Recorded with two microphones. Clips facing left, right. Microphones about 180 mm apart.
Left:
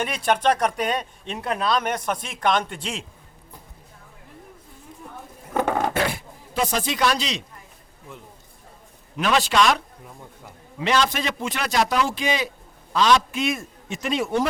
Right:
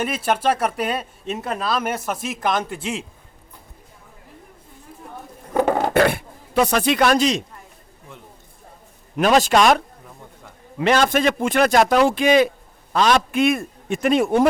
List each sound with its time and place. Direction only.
0.0 s speech: 5° right (ahead or behind)
5.5 s a sound: 10° right (ahead or behind)
5.9 s speech: 60° right (ahead or behind)
9.1 s a man's voice: 45° right (ahead or behind)